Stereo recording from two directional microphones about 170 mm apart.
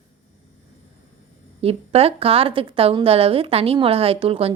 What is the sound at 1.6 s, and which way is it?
A woman's voice, 35° right (ahead or behind).